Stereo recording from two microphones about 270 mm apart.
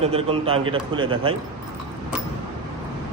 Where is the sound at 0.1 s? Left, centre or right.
Right.